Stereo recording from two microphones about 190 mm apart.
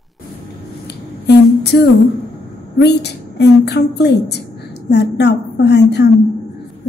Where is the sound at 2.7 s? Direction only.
60° left (ahead or behind).